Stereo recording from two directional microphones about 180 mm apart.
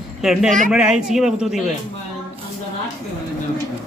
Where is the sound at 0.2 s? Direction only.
Centre (ahead or behind).